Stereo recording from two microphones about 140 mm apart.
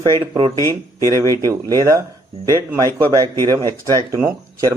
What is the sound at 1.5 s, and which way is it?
Speech, 25° right (ahead or behind).